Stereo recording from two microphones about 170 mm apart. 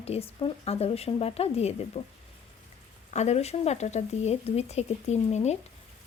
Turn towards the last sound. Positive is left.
turn(degrees=40)  # may be behind; listen again after turning